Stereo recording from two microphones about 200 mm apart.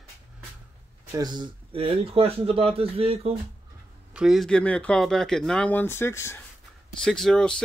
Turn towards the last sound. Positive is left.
turn(degrees=5)  # may be behind; listen again after turning